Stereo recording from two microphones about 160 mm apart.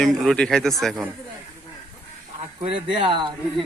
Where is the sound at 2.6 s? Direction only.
30° right (ahead or behind).